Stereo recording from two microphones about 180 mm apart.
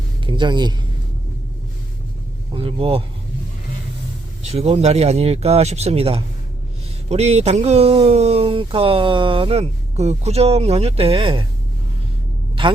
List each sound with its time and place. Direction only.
0.3 s speech: 25° right (ahead or behind)
2.5 s speech: 30° right (ahead or behind)
4.4 s speech: 35° right (ahead or behind)